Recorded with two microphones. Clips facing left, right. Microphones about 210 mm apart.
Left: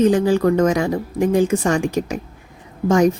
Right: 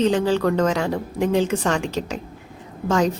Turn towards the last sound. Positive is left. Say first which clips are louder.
# left 5 dB
turn(degrees=15)  # may be behind; listen again after turning